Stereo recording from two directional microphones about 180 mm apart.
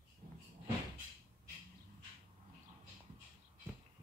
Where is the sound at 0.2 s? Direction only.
50° right (ahead or behind).